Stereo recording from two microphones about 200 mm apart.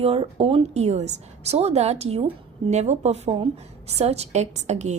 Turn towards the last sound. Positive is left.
turn(degrees=-35)  # may be behind; listen again after turning